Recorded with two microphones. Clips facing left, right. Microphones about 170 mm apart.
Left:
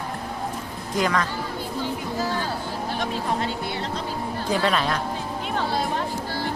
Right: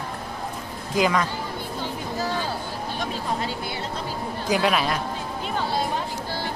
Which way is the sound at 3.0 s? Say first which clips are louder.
Left 1 dB; 5° right (ahead or behind).